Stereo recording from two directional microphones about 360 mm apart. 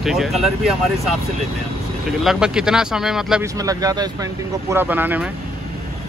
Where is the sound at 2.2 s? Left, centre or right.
Centre.